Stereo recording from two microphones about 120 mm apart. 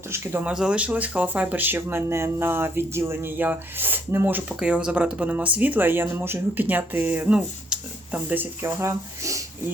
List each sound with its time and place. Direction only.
0.1 s speech: 20° right (ahead or behind)